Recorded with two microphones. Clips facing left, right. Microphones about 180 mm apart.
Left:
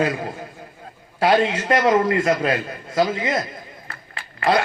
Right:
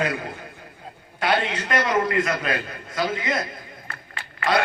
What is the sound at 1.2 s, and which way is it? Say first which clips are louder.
A man's voice: left 6 dB; 30° left (ahead or behind).